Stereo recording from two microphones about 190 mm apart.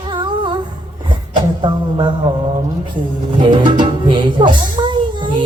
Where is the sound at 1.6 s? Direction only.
25° right (ahead or behind).